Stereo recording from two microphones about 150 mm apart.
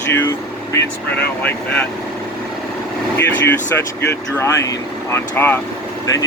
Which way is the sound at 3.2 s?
15° left (ahead or behind).